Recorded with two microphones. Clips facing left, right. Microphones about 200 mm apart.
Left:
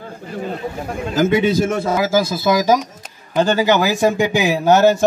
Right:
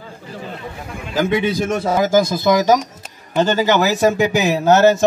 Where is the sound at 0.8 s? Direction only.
45° left (ahead or behind).